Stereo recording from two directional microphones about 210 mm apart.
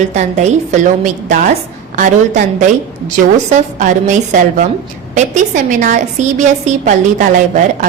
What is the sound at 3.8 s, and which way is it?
A woman's voice, 35° right (ahead or behind).